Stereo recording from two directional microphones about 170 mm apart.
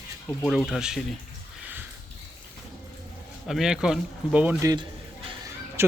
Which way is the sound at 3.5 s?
Centre (ahead or behind).